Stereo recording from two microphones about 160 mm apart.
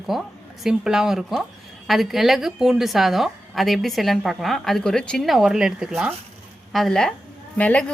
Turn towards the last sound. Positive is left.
turn(degrees=10)  # may be behind; listen again after turning